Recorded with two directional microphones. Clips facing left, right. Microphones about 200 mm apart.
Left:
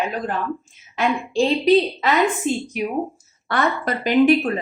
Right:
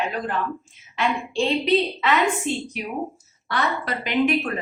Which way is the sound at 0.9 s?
40° left (ahead or behind).